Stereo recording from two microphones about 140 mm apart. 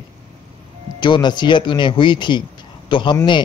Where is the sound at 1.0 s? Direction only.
30° left (ahead or behind).